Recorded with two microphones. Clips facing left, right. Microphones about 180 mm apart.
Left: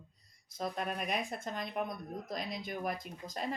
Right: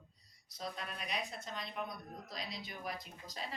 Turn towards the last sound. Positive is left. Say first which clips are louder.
# left 7 dB
turn(degrees=50)  # may be behind; listen again after turning